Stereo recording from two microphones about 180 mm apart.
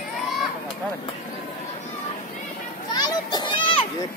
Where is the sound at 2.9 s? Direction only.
20° left (ahead or behind).